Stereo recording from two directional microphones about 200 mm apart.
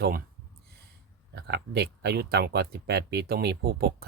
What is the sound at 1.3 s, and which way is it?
Speech, 55° right (ahead or behind).